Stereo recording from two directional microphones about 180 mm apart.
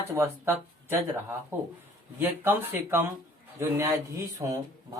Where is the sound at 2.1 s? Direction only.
10° right (ahead or behind).